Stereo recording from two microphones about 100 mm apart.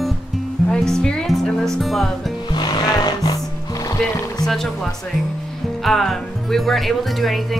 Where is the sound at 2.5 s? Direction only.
45° left (ahead or behind).